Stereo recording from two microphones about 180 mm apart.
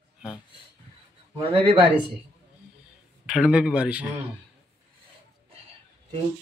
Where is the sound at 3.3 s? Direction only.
5° right (ahead or behind).